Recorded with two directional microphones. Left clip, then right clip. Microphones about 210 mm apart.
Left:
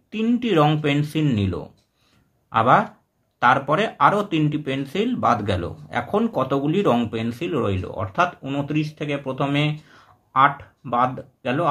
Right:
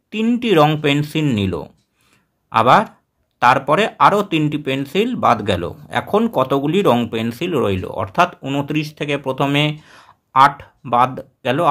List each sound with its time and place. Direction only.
0.1 s speech: 30° right (ahead or behind)